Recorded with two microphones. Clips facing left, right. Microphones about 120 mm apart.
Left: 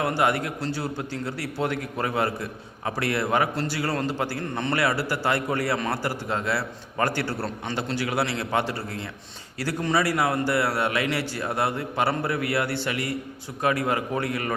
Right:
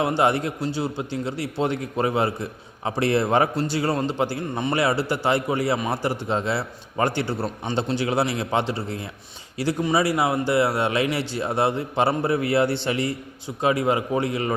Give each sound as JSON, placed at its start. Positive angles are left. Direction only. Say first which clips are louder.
{"t": 0.0, "sound": "a man's voice", "louder": "right 3 dB", "side_deg": -25}